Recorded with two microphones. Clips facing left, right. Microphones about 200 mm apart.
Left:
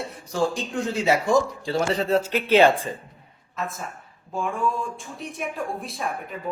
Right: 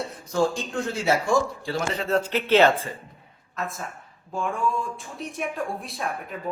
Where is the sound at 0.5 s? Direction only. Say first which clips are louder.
Left 2 dB; 15° left (ahead or behind).